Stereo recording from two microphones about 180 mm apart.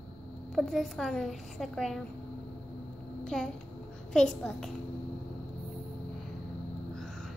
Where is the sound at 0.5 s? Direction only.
Centre (ahead or behind).